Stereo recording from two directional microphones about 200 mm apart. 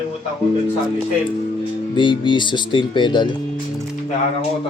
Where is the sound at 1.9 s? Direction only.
25° left (ahead or behind).